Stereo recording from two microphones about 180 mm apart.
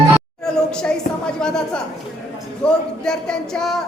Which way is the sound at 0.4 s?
5° left (ahead or behind).